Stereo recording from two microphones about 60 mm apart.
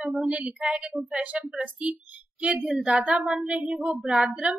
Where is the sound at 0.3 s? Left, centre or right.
Centre.